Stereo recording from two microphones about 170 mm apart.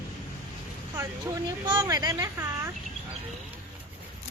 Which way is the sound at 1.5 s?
25° right (ahead or behind).